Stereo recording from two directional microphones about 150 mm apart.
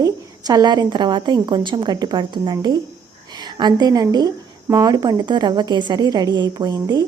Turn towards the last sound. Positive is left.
turn(degrees=-25)  # may be behind; listen again after turning